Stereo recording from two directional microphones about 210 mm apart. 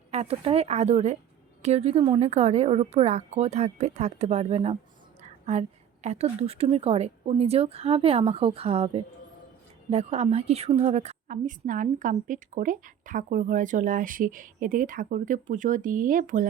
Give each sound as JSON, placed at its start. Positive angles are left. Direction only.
{"t": 0.1, "sound": "a woman's voice", "side_deg": -30}